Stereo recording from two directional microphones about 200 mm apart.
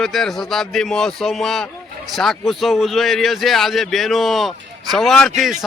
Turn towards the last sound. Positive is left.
turn(degrees=0)  # may be behind; listen again after turning